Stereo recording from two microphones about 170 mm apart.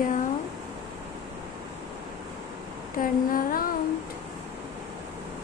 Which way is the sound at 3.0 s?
55° left (ahead or behind).